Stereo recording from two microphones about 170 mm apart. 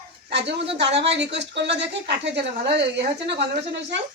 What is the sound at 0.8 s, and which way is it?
Speech, 90° right.